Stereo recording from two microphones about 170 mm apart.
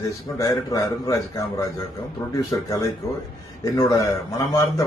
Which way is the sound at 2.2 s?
15° left (ahead or behind).